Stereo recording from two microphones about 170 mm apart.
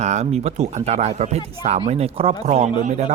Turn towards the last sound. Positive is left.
turn(degrees=-45)  # may be behind; listen again after turning